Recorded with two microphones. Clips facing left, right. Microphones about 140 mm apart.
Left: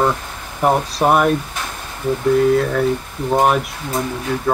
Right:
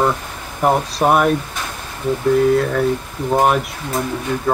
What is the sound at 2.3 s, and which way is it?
Speech, centre (ahead or behind).